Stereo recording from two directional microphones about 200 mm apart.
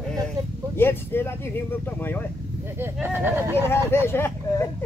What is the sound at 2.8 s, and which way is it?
Speech, 10° right (ahead or behind).